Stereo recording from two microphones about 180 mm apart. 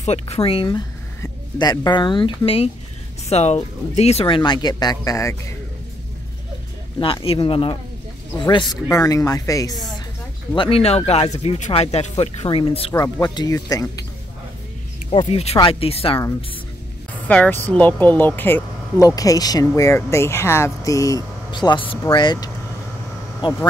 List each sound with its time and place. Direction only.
0.0 s speech: 35° left (ahead or behind)
0.7 s speech: 20° left (ahead or behind)
7.0 s speech: 30° left (ahead or behind)
10.5 s speech: 30° left (ahead or behind)
15.0 s speech: 35° left (ahead or behind)
17.3 s speech: 10° left (ahead or behind); by 23.6 s 25° left (ahead or behind)